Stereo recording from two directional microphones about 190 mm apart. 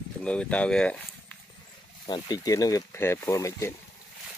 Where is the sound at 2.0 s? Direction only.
20° left (ahead or behind).